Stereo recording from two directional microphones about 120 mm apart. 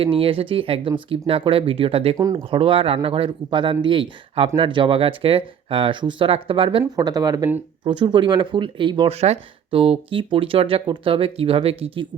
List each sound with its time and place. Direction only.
0.0 s speech: 50° right (ahead or behind)
6.9 s speech: 30° right (ahead or behind)
7.9 s speech: 40° right (ahead or behind)
9.1 s speech: 60° right (ahead or behind)